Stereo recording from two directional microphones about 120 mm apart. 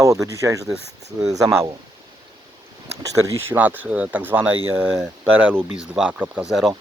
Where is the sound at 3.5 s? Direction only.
15° right (ahead or behind).